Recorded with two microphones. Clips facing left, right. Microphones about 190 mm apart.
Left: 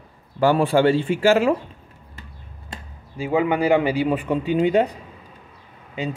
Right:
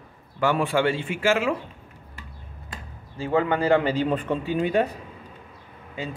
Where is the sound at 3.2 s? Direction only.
10° left (ahead or behind).